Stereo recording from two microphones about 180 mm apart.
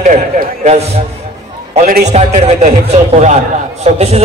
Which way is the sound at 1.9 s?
40° right (ahead or behind).